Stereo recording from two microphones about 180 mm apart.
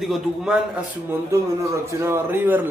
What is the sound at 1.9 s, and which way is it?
Speech, 15° right (ahead or behind).